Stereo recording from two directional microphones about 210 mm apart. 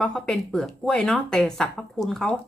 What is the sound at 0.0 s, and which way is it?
Speech, 5° left (ahead or behind).